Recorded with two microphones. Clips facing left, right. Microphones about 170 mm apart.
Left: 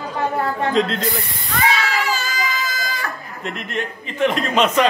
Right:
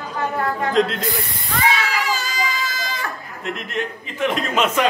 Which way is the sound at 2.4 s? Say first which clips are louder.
Even; 25° right (ahead or behind).